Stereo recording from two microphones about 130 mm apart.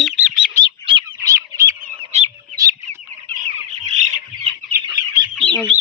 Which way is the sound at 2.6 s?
25° right (ahead or behind).